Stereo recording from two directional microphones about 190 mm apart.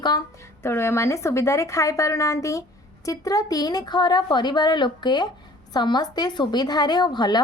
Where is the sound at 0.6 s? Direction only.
15° left (ahead or behind).